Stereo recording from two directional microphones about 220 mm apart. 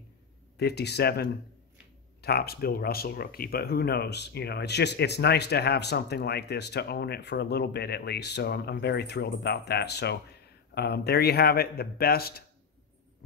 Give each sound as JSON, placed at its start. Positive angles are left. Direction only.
{"t": 0.6, "sound": "speech", "side_deg": 50}